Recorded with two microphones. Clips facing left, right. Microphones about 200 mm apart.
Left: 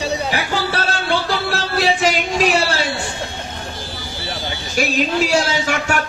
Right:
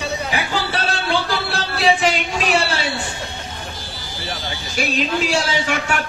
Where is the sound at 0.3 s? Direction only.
40° left (ahead or behind).